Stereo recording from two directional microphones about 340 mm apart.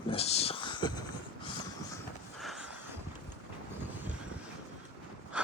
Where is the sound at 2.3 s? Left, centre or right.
Centre.